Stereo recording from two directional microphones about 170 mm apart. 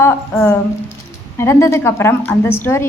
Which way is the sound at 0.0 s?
15° left (ahead or behind).